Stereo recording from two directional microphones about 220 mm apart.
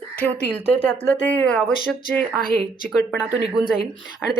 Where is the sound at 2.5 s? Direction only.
45° left (ahead or behind).